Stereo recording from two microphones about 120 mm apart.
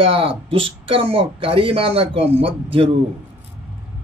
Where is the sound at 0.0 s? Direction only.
50° right (ahead or behind).